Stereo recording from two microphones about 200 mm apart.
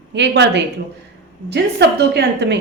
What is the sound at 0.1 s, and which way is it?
A woman's voice, 60° right (ahead or behind).